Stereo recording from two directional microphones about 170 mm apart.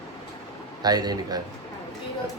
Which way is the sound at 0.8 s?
25° right (ahead or behind).